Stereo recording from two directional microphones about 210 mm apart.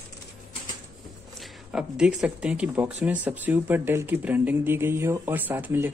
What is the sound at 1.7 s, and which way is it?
Speech, 5° right (ahead or behind).